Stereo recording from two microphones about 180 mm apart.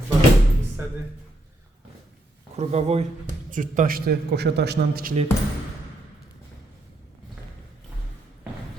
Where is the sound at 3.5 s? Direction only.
45° right (ahead or behind).